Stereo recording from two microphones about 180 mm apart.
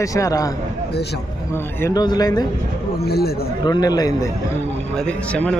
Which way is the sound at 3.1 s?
60° left (ahead or behind).